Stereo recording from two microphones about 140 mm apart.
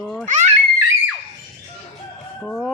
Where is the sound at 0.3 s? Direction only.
60° right (ahead or behind).